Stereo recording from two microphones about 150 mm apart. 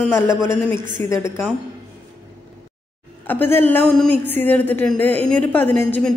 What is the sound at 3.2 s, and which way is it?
A woman's voice, 15° left (ahead or behind).